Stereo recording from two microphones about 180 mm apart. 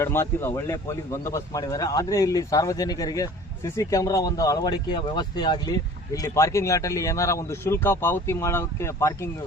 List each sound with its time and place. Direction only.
0.0 s speech: 15° left (ahead or behind)